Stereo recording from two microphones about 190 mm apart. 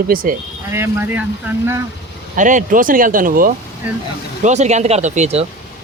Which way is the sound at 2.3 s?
40° right (ahead or behind).